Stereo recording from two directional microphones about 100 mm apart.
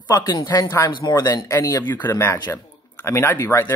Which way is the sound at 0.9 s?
45° left (ahead or behind).